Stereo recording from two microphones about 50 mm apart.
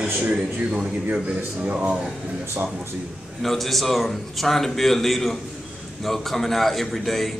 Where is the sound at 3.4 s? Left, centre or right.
Centre.